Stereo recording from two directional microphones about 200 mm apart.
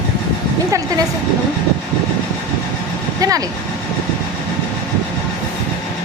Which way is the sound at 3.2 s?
15° right (ahead or behind).